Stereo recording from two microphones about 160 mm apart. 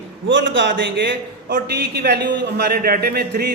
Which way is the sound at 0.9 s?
90° right.